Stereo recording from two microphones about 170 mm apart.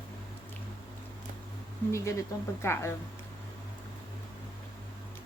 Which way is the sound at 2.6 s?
15° left (ahead or behind).